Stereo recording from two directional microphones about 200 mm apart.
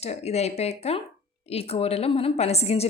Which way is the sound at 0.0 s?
30° left (ahead or behind).